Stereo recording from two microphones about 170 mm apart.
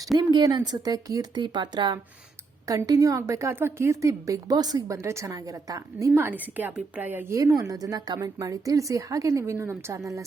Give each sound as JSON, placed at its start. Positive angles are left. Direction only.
{"t": 0.2, "sound": "a woman's voice", "side_deg": -25}